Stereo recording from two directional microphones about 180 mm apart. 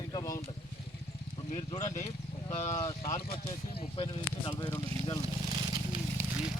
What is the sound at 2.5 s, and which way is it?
Speech, 40° left (ahead or behind).